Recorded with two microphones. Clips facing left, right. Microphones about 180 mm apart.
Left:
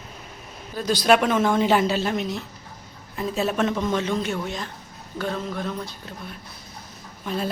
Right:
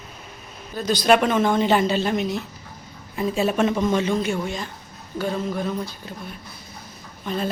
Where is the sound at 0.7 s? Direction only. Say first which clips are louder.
Right 1 dB; 5° left (ahead or behind).